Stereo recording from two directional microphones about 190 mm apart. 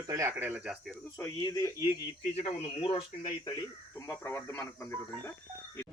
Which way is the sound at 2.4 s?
30° left (ahead or behind).